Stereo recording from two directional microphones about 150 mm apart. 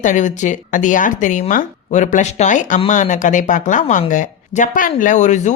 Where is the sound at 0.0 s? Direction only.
55° left (ahead or behind).